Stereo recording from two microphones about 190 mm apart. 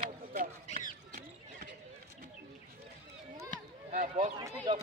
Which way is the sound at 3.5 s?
40° right (ahead or behind).